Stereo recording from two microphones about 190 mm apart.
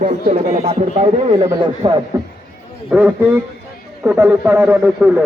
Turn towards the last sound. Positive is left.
turn(degrees=-10)  # may be behind; listen again after turning